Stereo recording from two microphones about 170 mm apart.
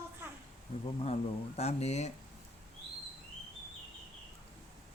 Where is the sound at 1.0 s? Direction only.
40° left (ahead or behind).